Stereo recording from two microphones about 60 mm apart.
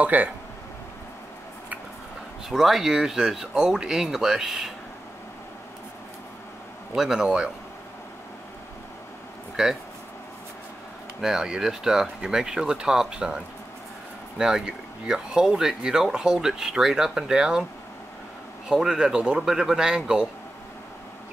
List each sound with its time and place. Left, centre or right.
0.0 s speech: right
2.5 s speech: centre
7.0 s speech: centre
9.6 s speech: centre
11.1 s speech: centre
14.4 s speech: centre
18.7 s speech: centre